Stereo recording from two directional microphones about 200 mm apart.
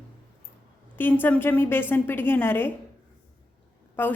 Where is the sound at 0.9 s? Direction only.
10° left (ahead or behind).